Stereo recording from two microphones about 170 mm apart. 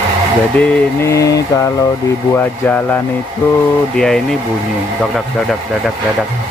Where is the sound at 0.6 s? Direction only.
15° left (ahead or behind).